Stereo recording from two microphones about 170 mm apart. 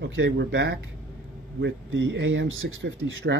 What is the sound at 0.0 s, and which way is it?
Speech, 90° right.